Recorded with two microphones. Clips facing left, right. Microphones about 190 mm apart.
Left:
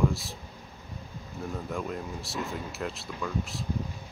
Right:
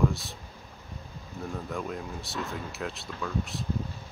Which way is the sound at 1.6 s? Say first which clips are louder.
Left 1 dB; centre (ahead or behind).